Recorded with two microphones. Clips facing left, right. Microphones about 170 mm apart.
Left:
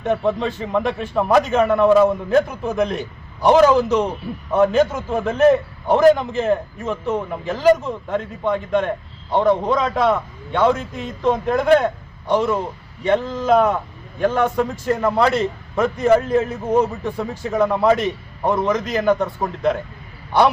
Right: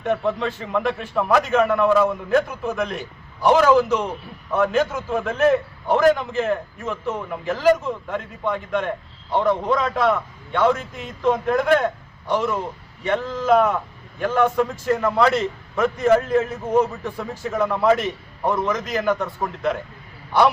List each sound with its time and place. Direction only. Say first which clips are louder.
0.0 s a man's voice: left 2 dB; 20° left (ahead or behind)
5.1 s a man's voice: left 4 dB; 20° left (ahead or behind)